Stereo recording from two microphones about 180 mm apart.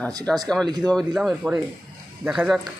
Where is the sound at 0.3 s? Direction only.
5° left (ahead or behind).